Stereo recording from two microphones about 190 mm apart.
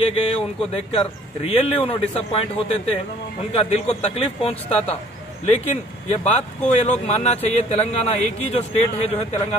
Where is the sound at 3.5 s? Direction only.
30° left (ahead or behind).